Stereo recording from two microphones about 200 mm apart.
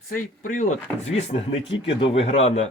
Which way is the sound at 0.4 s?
40° left (ahead or behind).